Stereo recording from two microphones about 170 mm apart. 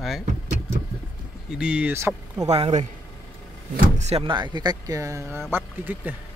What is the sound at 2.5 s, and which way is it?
Speech, 35° right (ahead or behind).